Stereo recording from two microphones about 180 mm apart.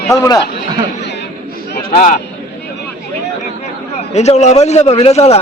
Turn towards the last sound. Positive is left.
turn(degrees=35)  # may be behind; listen again after turning